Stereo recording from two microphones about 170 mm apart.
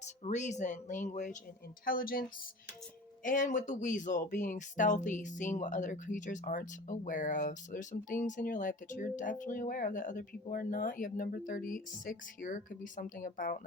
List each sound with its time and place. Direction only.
0.0 s speech: 45° left (ahead or behind)
1.8 s speech: 55° left (ahead or behind)
3.2 s speech: 50° left (ahead or behind)